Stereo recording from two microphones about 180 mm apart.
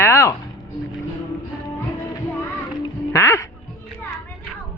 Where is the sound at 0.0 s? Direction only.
15° left (ahead or behind).